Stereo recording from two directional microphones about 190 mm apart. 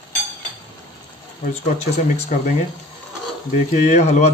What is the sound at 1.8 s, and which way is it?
Speech, 35° left (ahead or behind).